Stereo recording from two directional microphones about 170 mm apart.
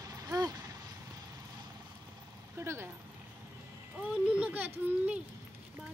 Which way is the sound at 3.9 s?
10° right (ahead or behind).